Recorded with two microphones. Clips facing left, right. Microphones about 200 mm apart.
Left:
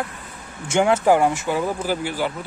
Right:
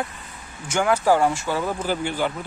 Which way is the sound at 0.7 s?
25° left (ahead or behind).